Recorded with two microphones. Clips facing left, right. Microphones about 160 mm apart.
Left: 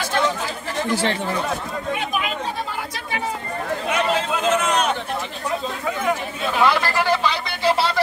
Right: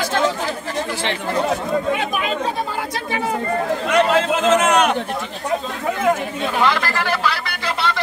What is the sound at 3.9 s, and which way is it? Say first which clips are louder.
Chatter: right 6 dB; 70° right (ahead or behind).